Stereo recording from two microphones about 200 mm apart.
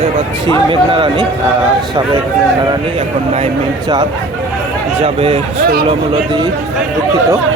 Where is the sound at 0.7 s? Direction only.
25° right (ahead or behind).